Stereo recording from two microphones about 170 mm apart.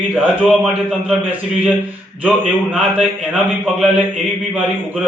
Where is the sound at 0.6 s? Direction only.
5° right (ahead or behind).